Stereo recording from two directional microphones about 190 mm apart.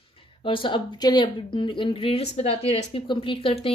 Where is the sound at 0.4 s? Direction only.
25° left (ahead or behind).